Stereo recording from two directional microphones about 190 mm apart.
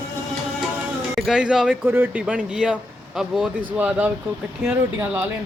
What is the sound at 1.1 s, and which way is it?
Speech, 5° right (ahead or behind).